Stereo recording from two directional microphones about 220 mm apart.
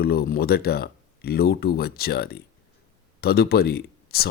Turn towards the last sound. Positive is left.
turn(degrees=45)  # may be behind; listen again after turning